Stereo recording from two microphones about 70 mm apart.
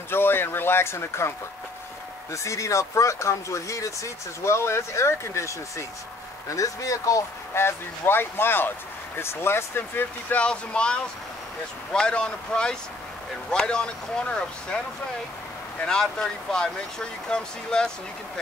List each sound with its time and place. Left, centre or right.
0.1 s speech: left
2.3 s speech: left
10.4 s speech: centre
15.8 s speech: centre